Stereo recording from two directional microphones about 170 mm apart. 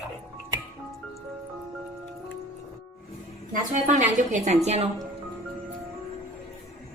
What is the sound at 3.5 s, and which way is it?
A woman's voice, 50° right (ahead or behind).